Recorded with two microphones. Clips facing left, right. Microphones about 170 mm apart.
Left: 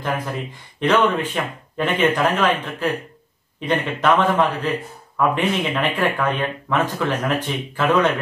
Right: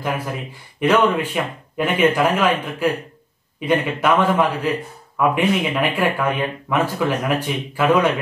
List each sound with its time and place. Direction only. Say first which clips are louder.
0.0 s speech: even; 10° right (ahead or behind)